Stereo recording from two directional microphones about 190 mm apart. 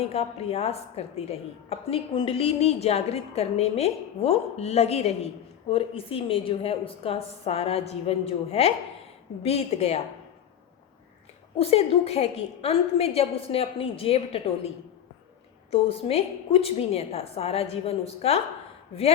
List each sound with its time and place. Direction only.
0.0 s a woman's voice: 30° left (ahead or behind)
11.5 s a woman's voice: 30° left (ahead or behind)
15.7 s a woman's voice: 30° left (ahead or behind)